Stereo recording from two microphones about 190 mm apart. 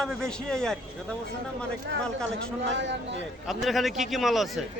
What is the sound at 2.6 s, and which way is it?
Speech, 70° right (ahead or behind).